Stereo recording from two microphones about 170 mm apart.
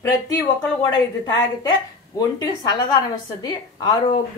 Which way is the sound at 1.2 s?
25° left (ahead or behind).